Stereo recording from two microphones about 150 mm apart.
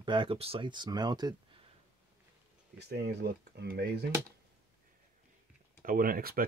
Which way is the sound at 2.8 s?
90° right.